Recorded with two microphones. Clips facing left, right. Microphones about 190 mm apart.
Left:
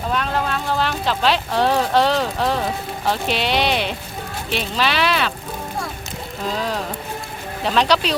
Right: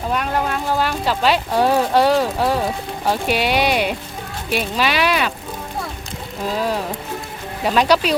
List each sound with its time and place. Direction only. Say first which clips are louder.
0.1 s speech: right 1 dB; 10° right (ahead or behind)
6.6 s speech: right 3 dB; 10° right (ahead or behind)